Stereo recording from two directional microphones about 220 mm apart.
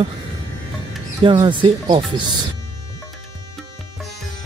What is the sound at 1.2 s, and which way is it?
Speech, 20° right (ahead or behind).